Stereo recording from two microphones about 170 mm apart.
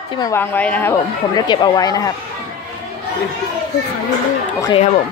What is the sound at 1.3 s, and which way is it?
Speech, 25° left (ahead or behind).